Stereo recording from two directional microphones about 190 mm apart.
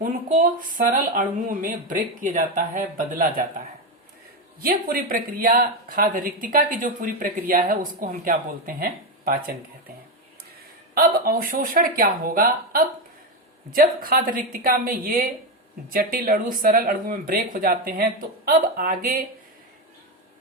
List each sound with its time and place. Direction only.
0.0 s a sound: 45° right (ahead or behind)
0.9 s speech: 45° right (ahead or behind)
4.6 s speech: 50° right (ahead or behind)
10.9 s speech: 50° right (ahead or behind)